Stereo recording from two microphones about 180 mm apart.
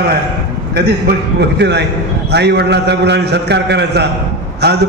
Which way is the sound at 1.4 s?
70° right (ahead or behind).